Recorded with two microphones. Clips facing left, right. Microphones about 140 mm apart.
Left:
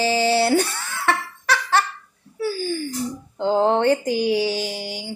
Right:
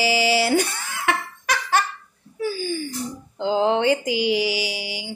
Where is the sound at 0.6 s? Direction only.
60° left (ahead or behind).